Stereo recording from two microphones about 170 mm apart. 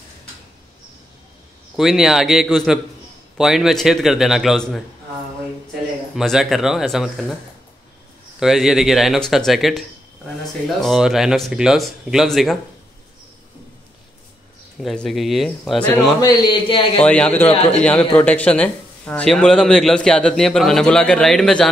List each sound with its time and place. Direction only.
1.8 s speech: centre (ahead or behind)
6.1 s speech: centre (ahead or behind)
8.4 s speech: centre (ahead or behind)
14.8 s speech: centre (ahead or behind)
16.2 s a man's voice: 25° left (ahead or behind)
17.0 s a man's voice: 5° left (ahead or behind)
17.5 s a man's voice: 40° left (ahead or behind)
17.8 s speech: 5° left (ahead or behind)